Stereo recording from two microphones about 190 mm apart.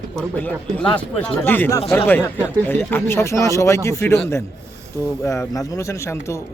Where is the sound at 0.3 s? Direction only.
10° left (ahead or behind).